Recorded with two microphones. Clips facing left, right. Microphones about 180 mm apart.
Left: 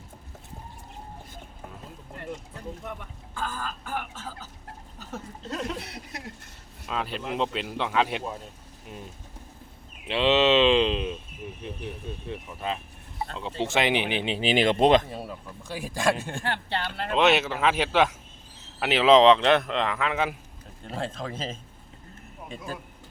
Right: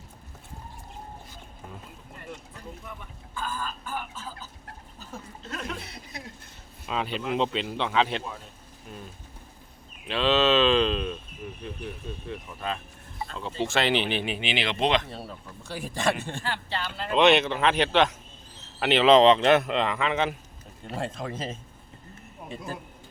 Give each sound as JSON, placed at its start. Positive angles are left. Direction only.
{"t": 3.3, "sound": "speech", "side_deg": 75}
{"t": 5.8, "sound": "speech", "side_deg": 75}
{"t": 6.8, "sound": "speech", "side_deg": 0}
{"t": 10.1, "sound": "speech", "side_deg": 20}
{"t": 14.4, "sound": "speech", "side_deg": 45}
{"t": 15.1, "sound": "speech", "side_deg": 10}
{"t": 16.4, "sound": "speech", "side_deg": 60}
{"t": 17.1, "sound": "speech", "side_deg": 5}